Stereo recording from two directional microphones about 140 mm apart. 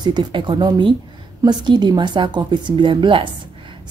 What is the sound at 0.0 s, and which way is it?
A woman's voice, 30° right (ahead or behind).